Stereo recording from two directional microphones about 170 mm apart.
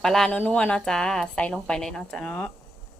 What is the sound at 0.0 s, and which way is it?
A woman's voice, centre (ahead or behind).